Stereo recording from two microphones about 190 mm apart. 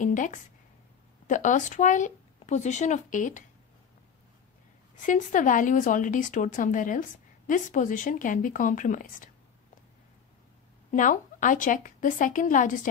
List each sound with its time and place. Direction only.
0.0 s a woman's voice: 40° left (ahead or behind)
5.0 s speech: 40° left (ahead or behind)
10.9 s speech: 40° left (ahead or behind)